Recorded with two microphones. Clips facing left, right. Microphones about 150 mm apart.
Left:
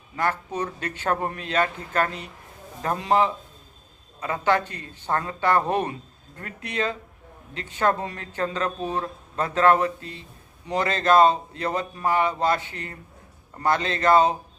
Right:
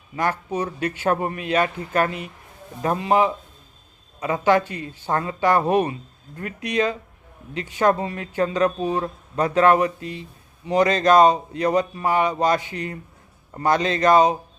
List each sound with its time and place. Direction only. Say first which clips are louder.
0.2 s speech: right 2 dB; 15° right (ahead or behind)